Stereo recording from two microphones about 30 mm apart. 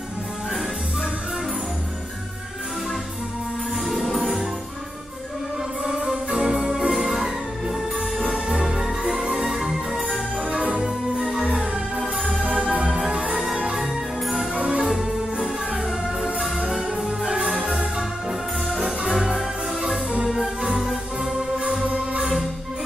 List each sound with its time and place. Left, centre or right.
3.8 s music: centre
6.0 s music: right
6.5 s music: centre
6.9 s music: centre
8.5 s music: right
9.4 s music: centre
12.6 s music: right
13.0 s music: right
14.2 s music: centre
14.5 s music: right
17.4 s music: centre
21.2 s music: right